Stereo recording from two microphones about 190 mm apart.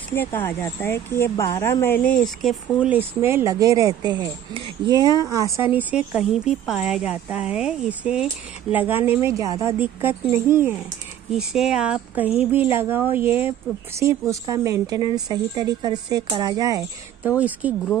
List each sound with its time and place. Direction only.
0.1 s speech: 10° left (ahead or behind)
2.4 s speech: 5° right (ahead or behind)